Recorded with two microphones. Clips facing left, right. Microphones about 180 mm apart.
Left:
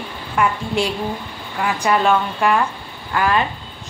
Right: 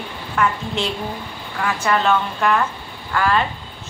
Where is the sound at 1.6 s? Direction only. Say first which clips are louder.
Left 2 dB; 15° left (ahead or behind).